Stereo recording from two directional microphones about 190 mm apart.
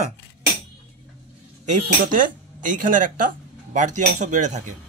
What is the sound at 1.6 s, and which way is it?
Speech, 40° right (ahead or behind).